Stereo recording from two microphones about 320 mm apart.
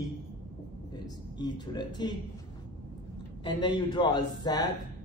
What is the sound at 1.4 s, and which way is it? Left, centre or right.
Speech, centre.